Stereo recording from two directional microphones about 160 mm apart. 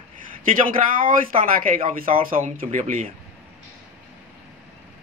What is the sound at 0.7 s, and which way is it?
Speech, 60° right (ahead or behind).